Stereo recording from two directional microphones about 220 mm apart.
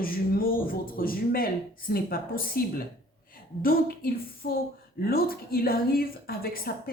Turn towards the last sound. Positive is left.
turn(degrees=40)  # may be behind; listen again after turning